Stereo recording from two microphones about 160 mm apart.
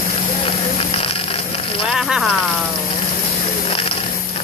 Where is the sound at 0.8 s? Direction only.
35° left (ahead or behind).